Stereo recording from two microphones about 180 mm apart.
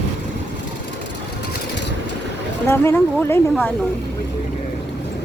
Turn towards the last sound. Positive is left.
turn(degrees=15)  # may be behind; listen again after turning